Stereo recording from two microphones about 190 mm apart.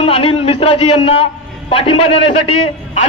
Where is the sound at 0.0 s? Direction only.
30° left (ahead or behind).